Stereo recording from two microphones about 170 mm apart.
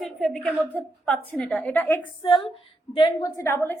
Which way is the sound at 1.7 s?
15° left (ahead or behind).